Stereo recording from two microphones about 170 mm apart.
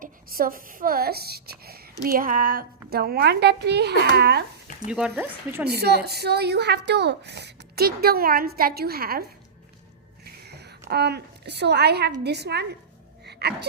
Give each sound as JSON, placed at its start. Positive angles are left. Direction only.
{"t": 0.0, "sound": "speech", "side_deg": -55}
{"t": 4.9, "sound": "speech", "side_deg": -5}
{"t": 5.6, "sound": "a woman's voice", "side_deg": -70}
{"t": 10.2, "sound": "a sound", "side_deg": -70}
{"t": 10.8, "sound": "a woman's voice", "side_deg": -75}
{"t": 13.2, "sound": "a sound", "side_deg": -75}